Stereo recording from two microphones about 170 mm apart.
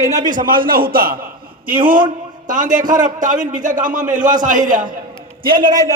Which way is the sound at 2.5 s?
50° right (ahead or behind).